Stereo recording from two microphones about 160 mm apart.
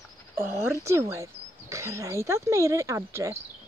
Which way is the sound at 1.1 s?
20° right (ahead or behind).